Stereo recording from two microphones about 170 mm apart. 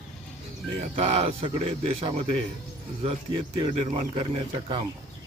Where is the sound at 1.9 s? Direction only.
35° right (ahead or behind).